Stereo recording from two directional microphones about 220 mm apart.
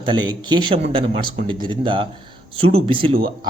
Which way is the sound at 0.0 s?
20° right (ahead or behind).